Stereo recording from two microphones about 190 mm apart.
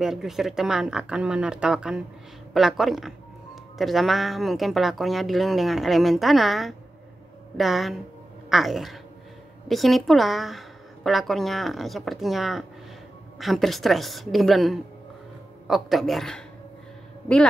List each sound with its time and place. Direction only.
0.0 s speech: centre (ahead or behind)